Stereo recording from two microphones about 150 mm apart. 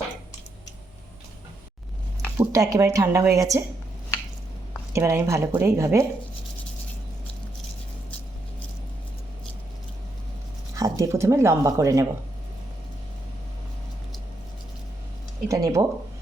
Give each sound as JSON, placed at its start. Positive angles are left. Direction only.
{"t": 2.4, "sound": "speech", "side_deg": -20}
{"t": 4.9, "sound": "speech", "side_deg": -20}
{"t": 10.8, "sound": "speech", "side_deg": -25}
{"t": 15.4, "sound": "speech", "side_deg": -20}